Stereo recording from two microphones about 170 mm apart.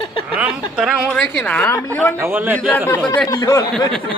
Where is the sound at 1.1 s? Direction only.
10° left (ahead or behind).